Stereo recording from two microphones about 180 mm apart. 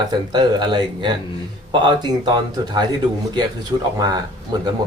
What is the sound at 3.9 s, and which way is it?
Speech, 20° right (ahead or behind).